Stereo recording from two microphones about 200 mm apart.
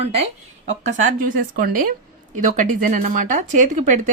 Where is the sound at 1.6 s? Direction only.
45° right (ahead or behind).